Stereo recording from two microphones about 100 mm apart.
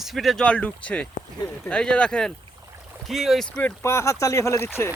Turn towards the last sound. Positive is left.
turn(degrees=25)  # may be behind; listen again after turning